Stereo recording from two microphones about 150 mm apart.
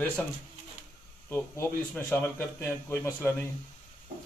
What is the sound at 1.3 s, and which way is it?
A man's voice, 15° left (ahead or behind).